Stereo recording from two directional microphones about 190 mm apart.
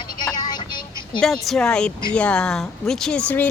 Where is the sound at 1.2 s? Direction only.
Centre (ahead or behind).